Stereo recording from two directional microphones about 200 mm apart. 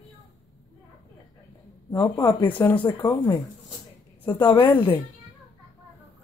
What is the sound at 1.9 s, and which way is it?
Speech, 10° left (ahead or behind).